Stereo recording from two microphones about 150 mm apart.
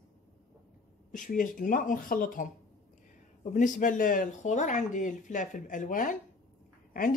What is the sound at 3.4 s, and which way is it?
Speech, 55° left (ahead or behind).